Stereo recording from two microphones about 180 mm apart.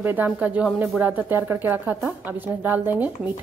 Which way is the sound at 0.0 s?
10° right (ahead or behind).